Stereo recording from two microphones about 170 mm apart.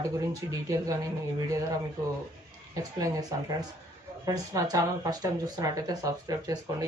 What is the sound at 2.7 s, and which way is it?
Speech, 20° right (ahead or behind).